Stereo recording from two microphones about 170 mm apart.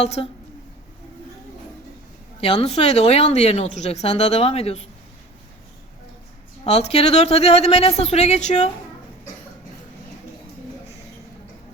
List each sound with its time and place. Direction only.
0.0 s speech: 40° left (ahead or behind)
2.4 s speech: 35° left (ahead or behind)
6.7 s speech: 35° left (ahead or behind)